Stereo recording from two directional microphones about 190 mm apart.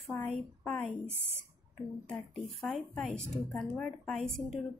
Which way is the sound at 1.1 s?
65° left (ahead or behind).